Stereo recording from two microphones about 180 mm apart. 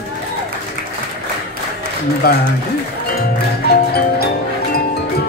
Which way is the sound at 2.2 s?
60° left (ahead or behind).